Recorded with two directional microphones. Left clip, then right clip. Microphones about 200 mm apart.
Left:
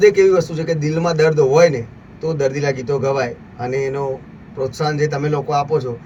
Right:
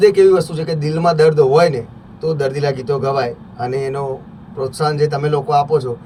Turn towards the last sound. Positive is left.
turn(degrees=-5)  # may be behind; listen again after turning